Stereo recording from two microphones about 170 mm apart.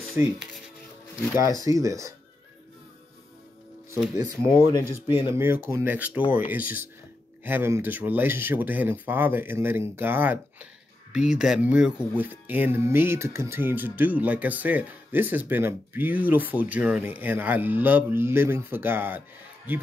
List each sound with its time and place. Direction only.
0.2 s speech: 15° right (ahead or behind)
1.6 s speech: 20° right (ahead or behind)
4.2 s speech: 15° right (ahead or behind)